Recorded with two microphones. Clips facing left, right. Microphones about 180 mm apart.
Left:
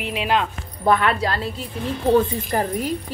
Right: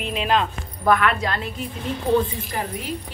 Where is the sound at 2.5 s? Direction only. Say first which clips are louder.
Left 6 dB; 45° left (ahead or behind).